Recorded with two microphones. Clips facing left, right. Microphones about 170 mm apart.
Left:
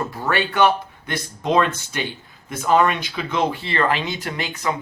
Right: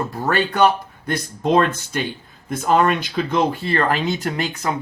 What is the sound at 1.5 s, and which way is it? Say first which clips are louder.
Speech: right 2 dB; 50° right (ahead or behind).